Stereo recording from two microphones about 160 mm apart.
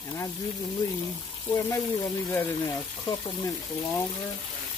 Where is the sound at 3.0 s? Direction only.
30° left (ahead or behind).